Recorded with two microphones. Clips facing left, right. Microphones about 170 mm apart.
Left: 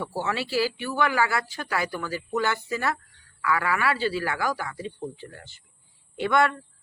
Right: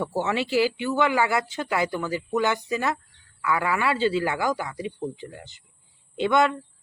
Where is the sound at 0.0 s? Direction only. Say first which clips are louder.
Right 4 dB; 20° right (ahead or behind).